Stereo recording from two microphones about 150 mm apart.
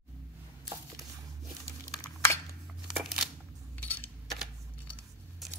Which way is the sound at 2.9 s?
Centre (ahead or behind).